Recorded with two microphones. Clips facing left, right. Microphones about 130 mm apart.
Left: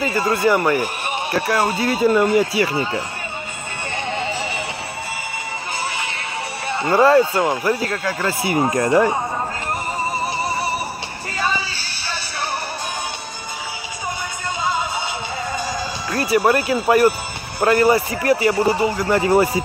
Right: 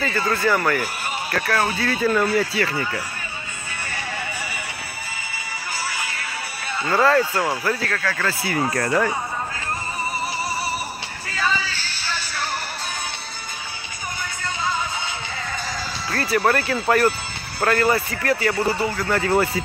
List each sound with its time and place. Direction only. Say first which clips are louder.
0.0 s speech: left 4 dB; 20° left (ahead or behind)
3.9 s music: left 7 dB; 25° left (ahead or behind)
6.7 s speech: left 4 dB; 25° left (ahead or behind)
10.5 s music: left 4 dB; 20° left (ahead or behind)
16.1 s speech: left 3 dB; 15° left (ahead or behind)